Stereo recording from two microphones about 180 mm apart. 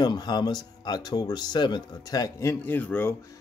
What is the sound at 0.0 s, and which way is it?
Speech, 25° left (ahead or behind).